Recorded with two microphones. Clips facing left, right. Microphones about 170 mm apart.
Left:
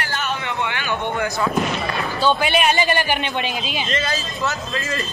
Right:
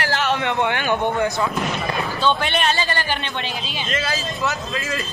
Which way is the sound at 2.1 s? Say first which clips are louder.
Left 3 dB; 5° left (ahead or behind).